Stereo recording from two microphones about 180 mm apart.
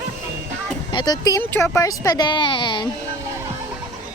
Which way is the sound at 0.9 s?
25° left (ahead or behind).